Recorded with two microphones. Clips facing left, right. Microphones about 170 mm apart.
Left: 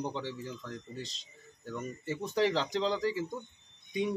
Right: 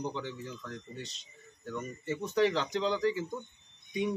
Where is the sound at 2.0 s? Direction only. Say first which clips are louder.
Right 2 dB; 30° left (ahead or behind).